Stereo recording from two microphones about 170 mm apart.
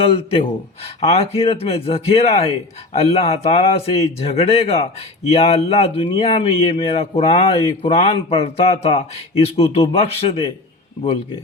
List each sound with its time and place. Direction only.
0.0 s speech: 35° left (ahead or behind)